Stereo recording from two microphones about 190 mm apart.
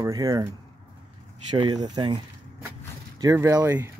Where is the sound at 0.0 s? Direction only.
15° right (ahead or behind).